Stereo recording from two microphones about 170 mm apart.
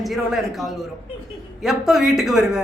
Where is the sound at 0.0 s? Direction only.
Centre (ahead or behind).